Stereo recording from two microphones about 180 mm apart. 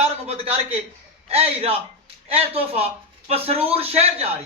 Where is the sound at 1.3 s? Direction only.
35° right (ahead or behind).